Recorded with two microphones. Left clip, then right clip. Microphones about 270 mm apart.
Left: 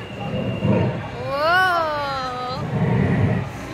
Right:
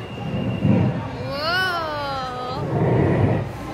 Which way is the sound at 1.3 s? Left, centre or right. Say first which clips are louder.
Left 5 dB; centre.